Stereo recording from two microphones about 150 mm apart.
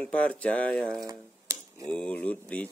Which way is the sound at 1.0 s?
20° right (ahead or behind).